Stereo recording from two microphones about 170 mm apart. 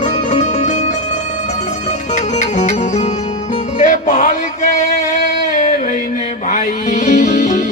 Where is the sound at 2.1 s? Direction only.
45° left (ahead or behind).